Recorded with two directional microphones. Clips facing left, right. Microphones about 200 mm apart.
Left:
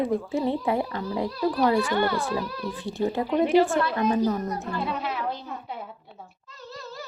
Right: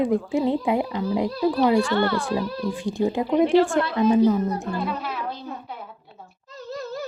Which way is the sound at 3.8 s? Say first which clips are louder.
Right 4 dB; 25° right (ahead or behind).